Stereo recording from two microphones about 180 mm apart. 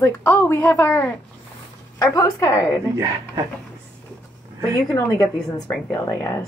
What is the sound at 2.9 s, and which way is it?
Speech, 20° right (ahead or behind).